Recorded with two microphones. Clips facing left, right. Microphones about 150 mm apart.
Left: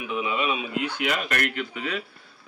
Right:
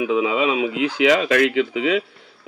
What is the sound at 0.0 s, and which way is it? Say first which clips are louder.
Speech: right 8 dB; 90° right.